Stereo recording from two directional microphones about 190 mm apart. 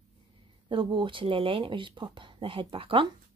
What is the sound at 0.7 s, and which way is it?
Speech, 25° right (ahead or behind).